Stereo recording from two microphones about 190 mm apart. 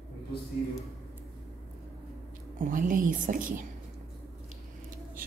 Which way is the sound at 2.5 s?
45° right (ahead or behind).